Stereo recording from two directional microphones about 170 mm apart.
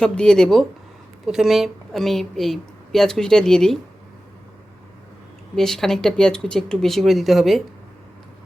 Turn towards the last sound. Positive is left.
turn(degrees=0)  # may be behind; listen again after turning